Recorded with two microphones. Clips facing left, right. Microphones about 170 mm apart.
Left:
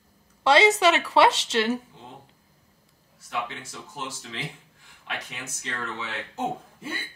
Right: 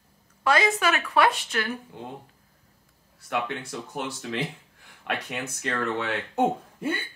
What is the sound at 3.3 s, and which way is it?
Speech, 60° right (ahead or behind).